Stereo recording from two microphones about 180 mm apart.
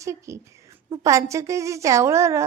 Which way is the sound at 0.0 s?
15° right (ahead or behind).